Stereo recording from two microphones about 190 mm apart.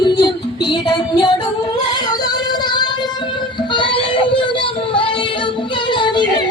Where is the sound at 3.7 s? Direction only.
25° left (ahead or behind).